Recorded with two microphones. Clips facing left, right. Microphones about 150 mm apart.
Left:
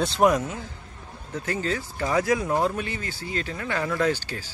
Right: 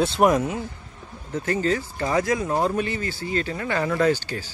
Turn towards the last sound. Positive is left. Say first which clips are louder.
# right 4 dB
turn(degrees=5)  # may be behind; listen again after turning